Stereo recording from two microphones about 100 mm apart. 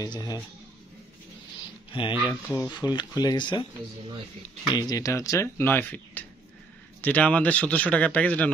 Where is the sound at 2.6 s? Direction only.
45° left (ahead or behind).